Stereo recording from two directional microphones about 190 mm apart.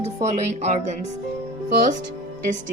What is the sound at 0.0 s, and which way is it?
A woman's voice, 35° right (ahead or behind).